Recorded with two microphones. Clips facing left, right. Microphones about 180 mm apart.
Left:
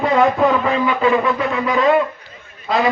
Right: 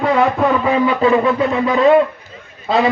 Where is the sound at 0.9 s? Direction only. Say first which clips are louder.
Right 2 dB; 35° right (ahead or behind).